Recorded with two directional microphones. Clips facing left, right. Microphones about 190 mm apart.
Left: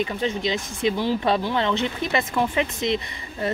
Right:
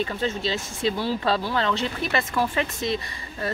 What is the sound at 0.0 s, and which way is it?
Speech, 15° left (ahead or behind).